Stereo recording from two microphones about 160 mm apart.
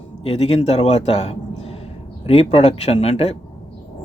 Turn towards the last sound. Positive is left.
turn(degrees=40)  # may be behind; listen again after turning